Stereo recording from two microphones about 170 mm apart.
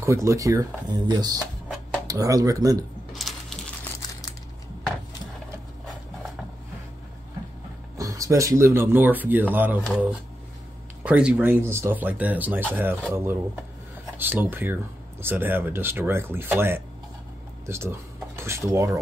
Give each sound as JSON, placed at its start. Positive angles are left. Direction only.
{"t": 0.0, "sound": "speech", "side_deg": -15}
{"t": 3.1, "sound": "coin", "side_deg": 0}
{"t": 8.0, "sound": "speech", "side_deg": -20}
{"t": 11.1, "sound": "speech", "side_deg": -5}